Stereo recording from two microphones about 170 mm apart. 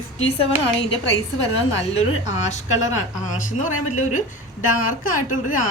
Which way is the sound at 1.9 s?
45° left (ahead or behind).